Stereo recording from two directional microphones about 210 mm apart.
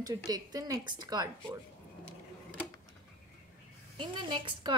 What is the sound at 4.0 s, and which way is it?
Speech, 20° right (ahead or behind).